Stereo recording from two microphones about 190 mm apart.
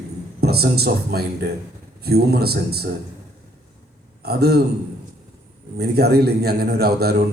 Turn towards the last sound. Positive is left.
turn(degrees=-55)  # may be behind; listen again after turning